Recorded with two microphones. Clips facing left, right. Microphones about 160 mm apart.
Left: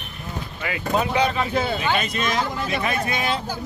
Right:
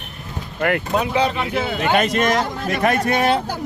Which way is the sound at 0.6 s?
60° right (ahead or behind).